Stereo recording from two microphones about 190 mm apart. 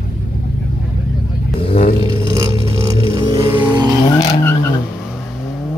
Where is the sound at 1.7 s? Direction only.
50° left (ahead or behind).